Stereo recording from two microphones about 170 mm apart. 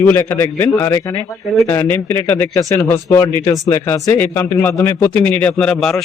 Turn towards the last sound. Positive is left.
turn(degrees=5)  # may be behind; listen again after turning